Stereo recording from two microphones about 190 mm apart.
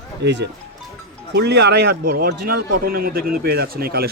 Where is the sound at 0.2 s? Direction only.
65° right (ahead or behind).